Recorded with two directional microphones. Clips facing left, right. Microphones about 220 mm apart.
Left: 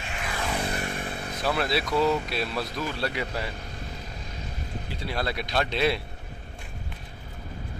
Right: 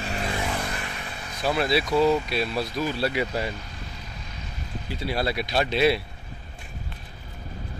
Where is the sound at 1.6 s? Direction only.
Centre (ahead or behind).